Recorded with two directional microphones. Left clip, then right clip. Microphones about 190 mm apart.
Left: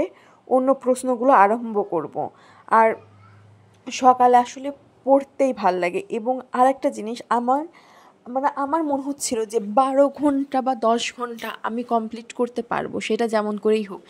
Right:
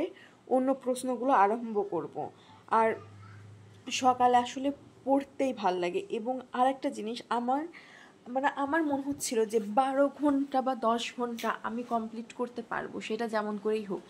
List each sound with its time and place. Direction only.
0.0 s a woman's voice: 20° left (ahead or behind); by 13.9 s 45° left (ahead or behind)